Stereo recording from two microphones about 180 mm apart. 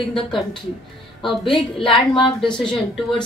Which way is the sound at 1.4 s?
30° left (ahead or behind).